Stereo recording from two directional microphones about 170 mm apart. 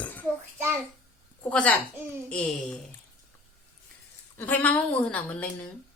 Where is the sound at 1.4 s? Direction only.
10° left (ahead or behind).